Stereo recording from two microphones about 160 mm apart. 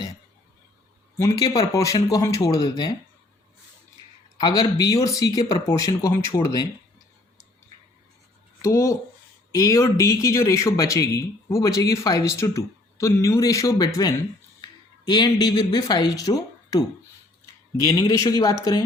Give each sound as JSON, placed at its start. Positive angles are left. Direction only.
{"t": 1.2, "sound": "a man's voice", "side_deg": 25}
{"t": 4.4, "sound": "a man's voice", "side_deg": 25}
{"t": 8.6, "sound": "a man's voice", "side_deg": 20}
{"t": 17.8, "sound": "a man's voice", "side_deg": 20}